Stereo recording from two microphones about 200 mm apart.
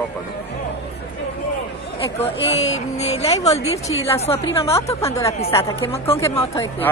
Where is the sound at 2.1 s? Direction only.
30° left (ahead or behind).